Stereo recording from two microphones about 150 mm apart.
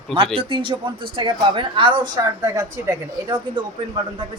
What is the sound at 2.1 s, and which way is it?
A woman's voice, 20° right (ahead or behind).